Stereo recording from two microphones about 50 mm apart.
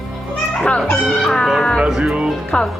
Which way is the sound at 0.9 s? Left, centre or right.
Centre.